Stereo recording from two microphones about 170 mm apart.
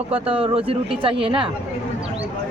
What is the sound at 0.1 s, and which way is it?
Speech, 35° right (ahead or behind).